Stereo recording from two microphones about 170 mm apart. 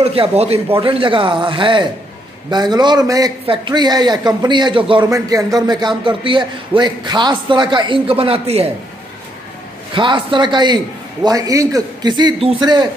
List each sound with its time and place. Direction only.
0.0 s a man's voice: 35° right (ahead or behind)
9.9 s a man's voice: 30° right (ahead or behind)